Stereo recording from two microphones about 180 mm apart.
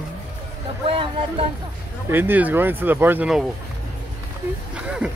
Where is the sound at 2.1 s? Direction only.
10° right (ahead or behind).